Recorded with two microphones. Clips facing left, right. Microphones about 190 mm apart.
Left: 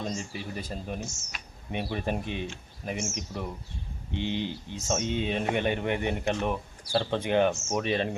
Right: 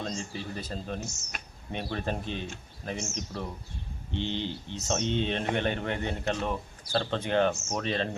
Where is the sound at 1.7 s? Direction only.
15° left (ahead or behind).